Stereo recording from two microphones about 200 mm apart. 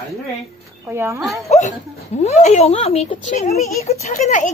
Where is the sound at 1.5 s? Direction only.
35° left (ahead or behind).